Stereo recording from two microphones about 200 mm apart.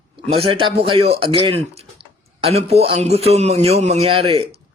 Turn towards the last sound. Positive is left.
turn(degrees=-30)  # may be behind; listen again after turning